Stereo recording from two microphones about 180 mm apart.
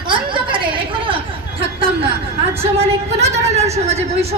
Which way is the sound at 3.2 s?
40° right (ahead or behind).